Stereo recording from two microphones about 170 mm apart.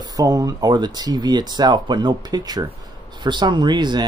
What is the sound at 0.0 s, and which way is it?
A man's voice, 20° right (ahead or behind).